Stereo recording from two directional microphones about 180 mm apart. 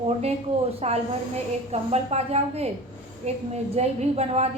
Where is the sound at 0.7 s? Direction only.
35° right (ahead or behind).